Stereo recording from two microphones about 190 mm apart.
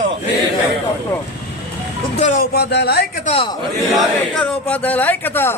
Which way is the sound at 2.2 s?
40° left (ahead or behind).